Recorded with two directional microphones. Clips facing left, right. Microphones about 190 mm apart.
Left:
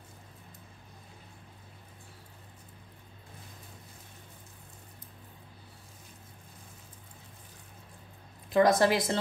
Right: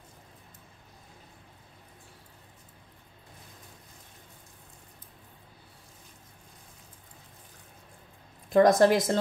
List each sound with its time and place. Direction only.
8.5 s a woman's voice: 45° right (ahead or behind)